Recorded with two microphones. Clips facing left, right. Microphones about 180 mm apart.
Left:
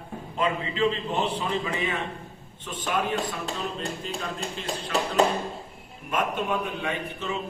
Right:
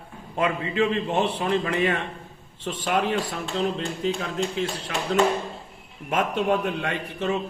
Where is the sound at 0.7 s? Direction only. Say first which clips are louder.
Right 2 dB; 60° right (ahead or behind).